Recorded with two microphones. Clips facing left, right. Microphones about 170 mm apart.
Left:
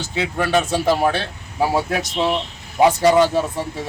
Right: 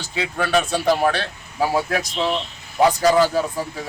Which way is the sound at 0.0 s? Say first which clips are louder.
Left 2 dB; 25° left (ahead or behind).